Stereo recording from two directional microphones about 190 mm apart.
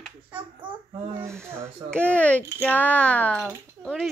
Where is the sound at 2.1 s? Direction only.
5° left (ahead or behind).